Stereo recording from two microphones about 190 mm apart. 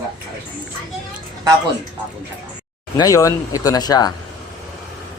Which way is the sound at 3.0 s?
15° left (ahead or behind).